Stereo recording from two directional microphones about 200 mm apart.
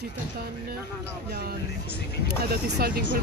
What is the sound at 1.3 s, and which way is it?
Speech, 50° right (ahead or behind).